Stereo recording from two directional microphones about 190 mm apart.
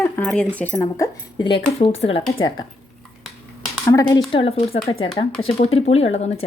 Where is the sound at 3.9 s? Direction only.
15° left (ahead or behind).